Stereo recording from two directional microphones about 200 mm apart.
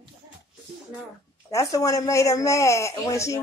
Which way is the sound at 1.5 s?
15° left (ahead or behind).